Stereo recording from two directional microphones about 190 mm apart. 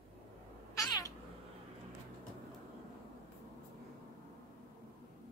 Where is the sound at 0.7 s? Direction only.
20° left (ahead or behind).